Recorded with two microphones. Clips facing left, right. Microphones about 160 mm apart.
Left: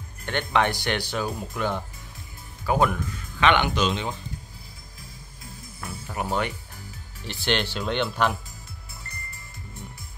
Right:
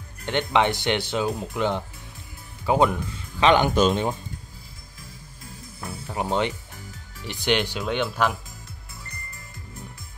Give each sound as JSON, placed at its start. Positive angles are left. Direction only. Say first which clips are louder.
{"t": 0.2, "sound": "speech", "louder": "right 2 dB", "side_deg": -20}
{"t": 5.8, "sound": "music", "louder": "right 2 dB", "side_deg": -20}
{"t": 7.2, "sound": "speech", "louder": "right 3 dB", "side_deg": -15}